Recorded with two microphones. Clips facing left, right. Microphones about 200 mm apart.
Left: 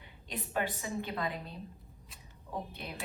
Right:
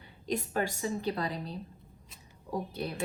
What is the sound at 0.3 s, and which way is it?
A woman's voice, 40° right (ahead or behind).